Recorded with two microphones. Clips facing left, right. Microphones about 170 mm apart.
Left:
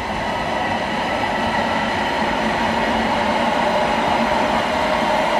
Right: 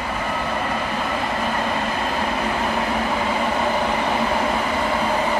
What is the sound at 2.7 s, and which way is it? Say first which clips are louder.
Vehicle: left 3 dB; 70° left (ahead or behind).